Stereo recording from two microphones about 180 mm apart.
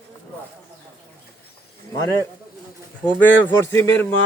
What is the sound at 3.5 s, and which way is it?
Speech, 15° left (ahead or behind).